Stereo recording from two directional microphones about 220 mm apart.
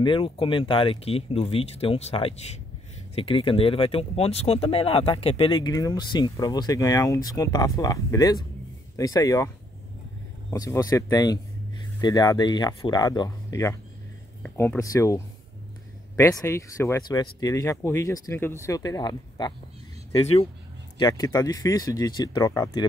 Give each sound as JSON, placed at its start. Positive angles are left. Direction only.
{"t": 0.0, "sound": "speech", "side_deg": 20}
{"t": 10.5, "sound": "speech", "side_deg": 15}
{"t": 21.0, "sound": "speech", "side_deg": 15}